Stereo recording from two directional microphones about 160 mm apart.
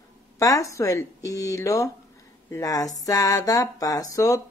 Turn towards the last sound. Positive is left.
turn(degrees=20)  # may be behind; listen again after turning